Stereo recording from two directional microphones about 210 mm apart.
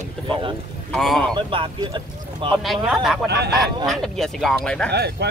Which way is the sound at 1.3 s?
25° right (ahead or behind).